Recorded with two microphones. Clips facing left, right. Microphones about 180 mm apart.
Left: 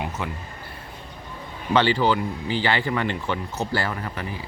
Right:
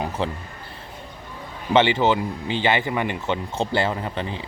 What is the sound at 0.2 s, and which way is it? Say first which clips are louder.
Speech: right 5 dB; 30° right (ahead or behind).